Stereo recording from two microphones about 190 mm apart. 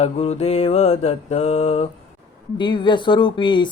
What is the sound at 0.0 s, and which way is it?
Mantra, 35° left (ahead or behind).